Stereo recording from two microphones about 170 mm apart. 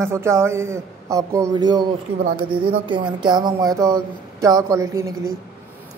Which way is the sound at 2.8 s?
30° right (ahead or behind).